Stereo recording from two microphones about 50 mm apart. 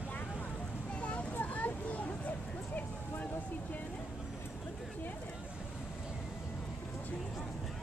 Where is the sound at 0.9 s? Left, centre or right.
Left.